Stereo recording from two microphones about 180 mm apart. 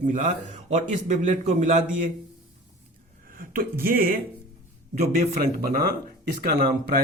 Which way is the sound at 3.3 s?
50° right (ahead or behind).